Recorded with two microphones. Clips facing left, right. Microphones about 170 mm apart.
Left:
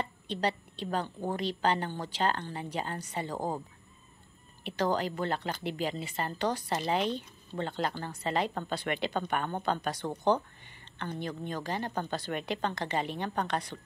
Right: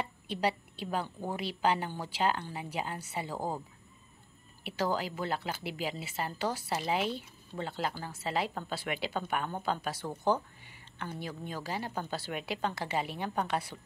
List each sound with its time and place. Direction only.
0.0 s a woman's voice: 10° right (ahead or behind)
3.3 s speech: 15° left (ahead or behind)
4.6 s speech: 5° right (ahead or behind)